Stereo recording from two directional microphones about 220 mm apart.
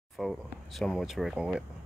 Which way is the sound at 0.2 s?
Centre (ahead or behind).